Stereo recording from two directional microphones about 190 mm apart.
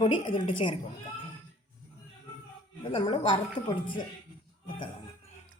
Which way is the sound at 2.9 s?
25° left (ahead or behind).